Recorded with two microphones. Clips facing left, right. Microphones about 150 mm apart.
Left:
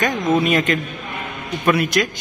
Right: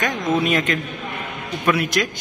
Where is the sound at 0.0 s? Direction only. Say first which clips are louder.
Left 3 dB; centre (ahead or behind).